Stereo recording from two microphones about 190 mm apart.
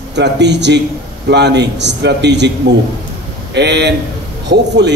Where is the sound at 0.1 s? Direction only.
65° right (ahead or behind).